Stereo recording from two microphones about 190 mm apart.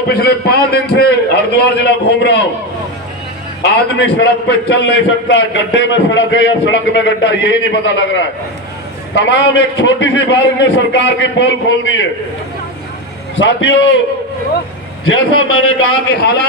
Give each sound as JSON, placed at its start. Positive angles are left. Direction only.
{"t": 0.1, "sound": "a man's voice", "side_deg": 55}
{"t": 3.6, "sound": "a man's voice", "side_deg": 60}
{"t": 15.0, "sound": "a man's voice", "side_deg": 90}